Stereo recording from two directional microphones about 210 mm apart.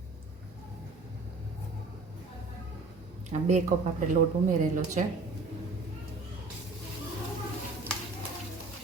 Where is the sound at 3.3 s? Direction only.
35° right (ahead or behind).